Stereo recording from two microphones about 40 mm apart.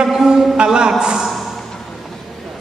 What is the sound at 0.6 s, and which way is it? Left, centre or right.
Speech, centre.